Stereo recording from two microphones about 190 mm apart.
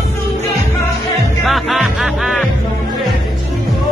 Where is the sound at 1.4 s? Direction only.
Centre (ahead or behind).